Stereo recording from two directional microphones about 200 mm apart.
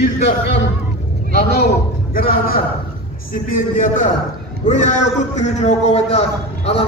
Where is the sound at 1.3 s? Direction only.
50° left (ahead or behind); by 6.9 s 30° left (ahead or behind).